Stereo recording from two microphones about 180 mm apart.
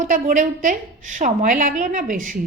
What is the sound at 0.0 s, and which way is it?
A woman's voice, 45° right (ahead or behind).